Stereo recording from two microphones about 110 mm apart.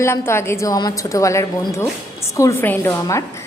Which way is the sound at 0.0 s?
25° left (ahead or behind).